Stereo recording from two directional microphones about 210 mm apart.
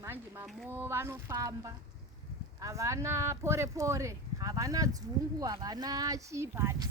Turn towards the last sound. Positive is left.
turn(degrees=-10)  # may be behind; listen again after turning